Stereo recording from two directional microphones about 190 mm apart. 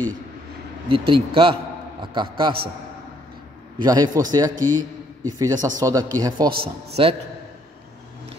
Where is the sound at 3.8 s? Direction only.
20° right (ahead or behind).